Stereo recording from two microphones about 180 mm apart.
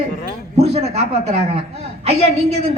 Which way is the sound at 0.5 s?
35° right (ahead or behind).